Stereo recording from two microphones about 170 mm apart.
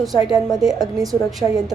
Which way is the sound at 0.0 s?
Centre (ahead or behind).